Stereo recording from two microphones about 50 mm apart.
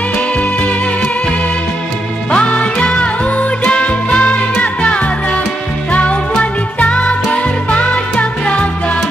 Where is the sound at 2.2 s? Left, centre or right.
Left.